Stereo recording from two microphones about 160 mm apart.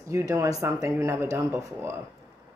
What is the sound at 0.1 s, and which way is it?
Speech, 20° right (ahead or behind).